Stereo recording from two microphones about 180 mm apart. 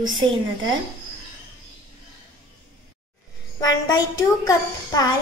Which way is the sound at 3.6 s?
20° left (ahead or behind).